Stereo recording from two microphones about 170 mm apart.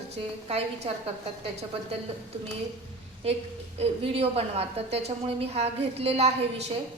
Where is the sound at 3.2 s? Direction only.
35° right (ahead or behind).